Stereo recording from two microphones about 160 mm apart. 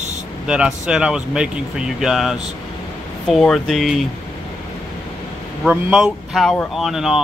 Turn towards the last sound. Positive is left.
turn(degrees=0)  # may be behind; listen again after turning